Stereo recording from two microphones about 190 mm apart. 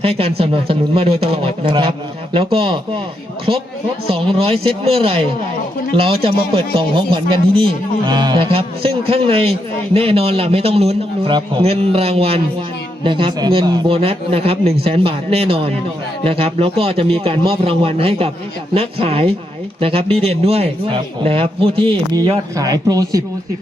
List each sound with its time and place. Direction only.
0.0 s speech: 30° right (ahead or behind)
4.0 s speech: 30° right (ahead or behind)